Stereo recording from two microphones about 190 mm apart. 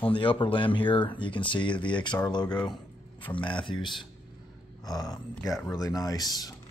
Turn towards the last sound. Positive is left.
turn(degrees=20)  # may be behind; listen again after turning